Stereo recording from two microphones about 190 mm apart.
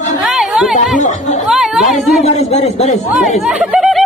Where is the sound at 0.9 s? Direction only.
40° left (ahead or behind).